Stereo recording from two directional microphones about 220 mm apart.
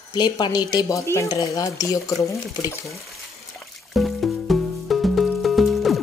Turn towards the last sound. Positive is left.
turn(degrees=0)  # may be behind; listen again after turning